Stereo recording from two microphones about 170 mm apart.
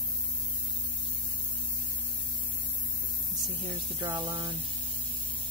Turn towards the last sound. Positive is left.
turn(degrees=-10)  # may be behind; listen again after turning